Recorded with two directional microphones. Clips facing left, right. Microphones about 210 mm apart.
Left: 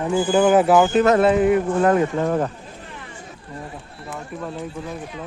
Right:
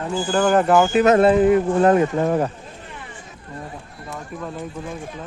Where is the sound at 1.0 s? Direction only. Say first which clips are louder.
Right 2 dB; 20° right (ahead or behind).